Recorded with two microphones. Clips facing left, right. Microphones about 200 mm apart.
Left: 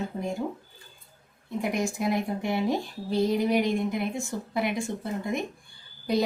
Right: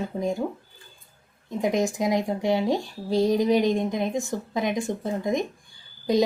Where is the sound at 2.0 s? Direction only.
15° right (ahead or behind).